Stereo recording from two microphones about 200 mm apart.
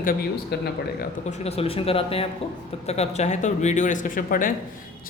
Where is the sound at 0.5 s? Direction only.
55° left (ahead or behind).